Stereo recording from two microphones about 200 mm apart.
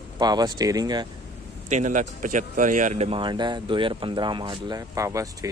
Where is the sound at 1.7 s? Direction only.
40° right (ahead or behind).